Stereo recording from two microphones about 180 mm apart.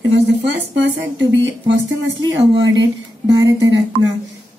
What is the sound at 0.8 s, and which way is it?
Speech, 90° right.